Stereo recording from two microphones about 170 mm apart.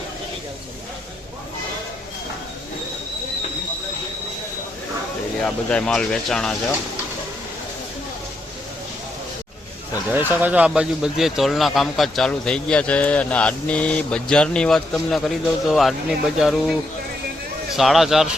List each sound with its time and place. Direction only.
5.5 s speech: 5° left (ahead or behind)
10.1 s speech: 10° right (ahead or behind)
17.7 s speech: centre (ahead or behind)